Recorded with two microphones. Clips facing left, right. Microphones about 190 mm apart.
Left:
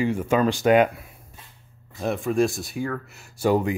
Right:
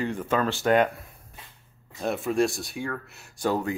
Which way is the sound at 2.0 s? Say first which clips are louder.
Left 2 dB; centre (ahead or behind).